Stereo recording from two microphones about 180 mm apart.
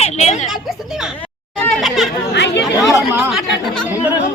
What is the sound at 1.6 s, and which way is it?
Speech, centre (ahead or behind).